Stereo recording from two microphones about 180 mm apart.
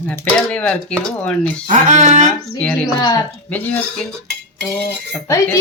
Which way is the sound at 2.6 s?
5° left (ahead or behind).